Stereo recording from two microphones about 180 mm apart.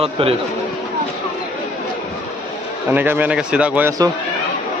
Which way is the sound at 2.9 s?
10° right (ahead or behind).